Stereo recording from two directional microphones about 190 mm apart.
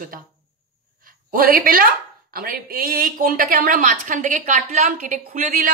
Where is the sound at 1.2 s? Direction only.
50° right (ahead or behind).